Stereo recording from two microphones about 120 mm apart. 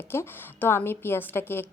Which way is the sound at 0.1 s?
20° left (ahead or behind).